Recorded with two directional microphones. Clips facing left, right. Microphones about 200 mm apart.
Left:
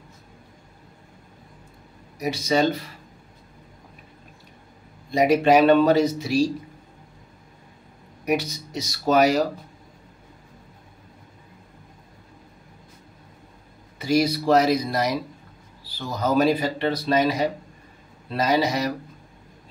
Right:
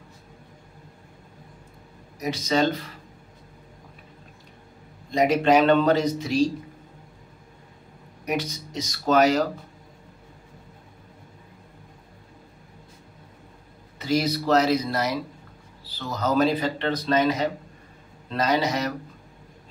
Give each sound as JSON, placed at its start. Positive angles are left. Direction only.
{"t": 2.1, "sound": "speech", "side_deg": 10}
{"t": 5.1, "sound": "speech", "side_deg": 10}
{"t": 8.3, "sound": "speech", "side_deg": 10}
{"t": 13.9, "sound": "speech", "side_deg": 10}